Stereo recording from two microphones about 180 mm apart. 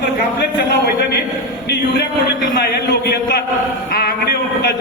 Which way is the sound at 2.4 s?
65° left (ahead or behind).